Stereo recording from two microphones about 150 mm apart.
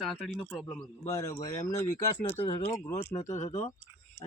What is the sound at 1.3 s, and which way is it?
Speech, 25° left (ahead or behind).